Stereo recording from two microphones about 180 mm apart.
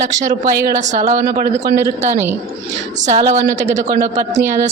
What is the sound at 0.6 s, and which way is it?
Speech, 50° right (ahead or behind).